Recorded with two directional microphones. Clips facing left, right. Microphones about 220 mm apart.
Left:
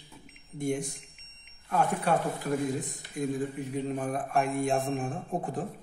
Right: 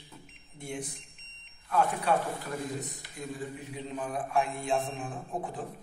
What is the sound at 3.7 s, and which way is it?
Speech, 50° left (ahead or behind).